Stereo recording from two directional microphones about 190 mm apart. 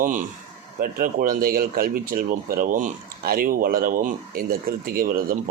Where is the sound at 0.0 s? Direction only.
45° right (ahead or behind).